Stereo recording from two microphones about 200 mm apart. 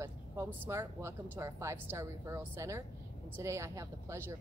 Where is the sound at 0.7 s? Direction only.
15° right (ahead or behind).